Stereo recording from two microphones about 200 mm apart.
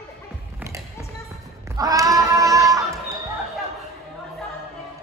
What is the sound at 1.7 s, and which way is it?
Cat, 15° right (ahead or behind).